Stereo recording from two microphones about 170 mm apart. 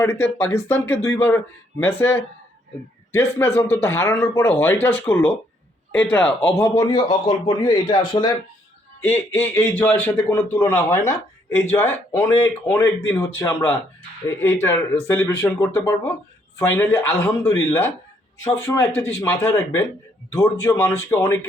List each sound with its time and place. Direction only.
0.0 s a man's voice: 15° left (ahead or behind)
6.9 s a man's voice: 30° left (ahead or behind)
9.0 s a man's voice: 10° left (ahead or behind)